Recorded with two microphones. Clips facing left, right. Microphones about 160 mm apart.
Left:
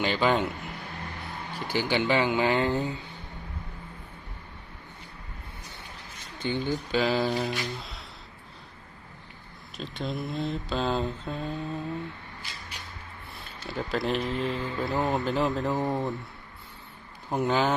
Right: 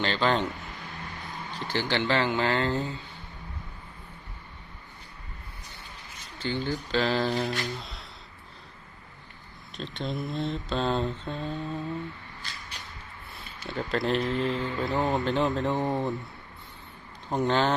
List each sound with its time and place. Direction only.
0.0 s speech: 10° left (ahead or behind)
1.5 s speech: 10° left (ahead or behind)
6.4 s speech: 15° left (ahead or behind)
9.7 s speech: centre (ahead or behind)
13.7 s speech: centre (ahead or behind)
17.2 s speech: 5° left (ahead or behind)